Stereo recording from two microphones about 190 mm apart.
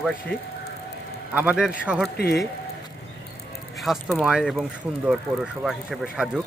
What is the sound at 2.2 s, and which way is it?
Speech, 55° left (ahead or behind).